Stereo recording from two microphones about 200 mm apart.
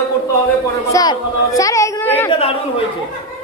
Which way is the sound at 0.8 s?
15° left (ahead or behind).